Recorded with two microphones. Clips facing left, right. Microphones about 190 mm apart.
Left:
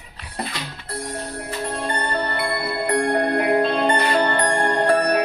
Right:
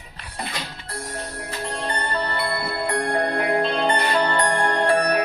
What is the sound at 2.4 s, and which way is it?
Music, 55° left (ahead or behind).